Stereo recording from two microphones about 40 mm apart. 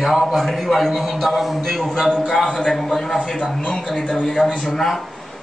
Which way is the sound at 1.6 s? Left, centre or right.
Centre.